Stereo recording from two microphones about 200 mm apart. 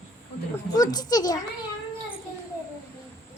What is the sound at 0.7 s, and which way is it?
Speech, 20° left (ahead or behind).